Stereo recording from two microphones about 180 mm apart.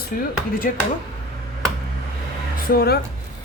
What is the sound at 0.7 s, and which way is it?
Speech, 45° left (ahead or behind).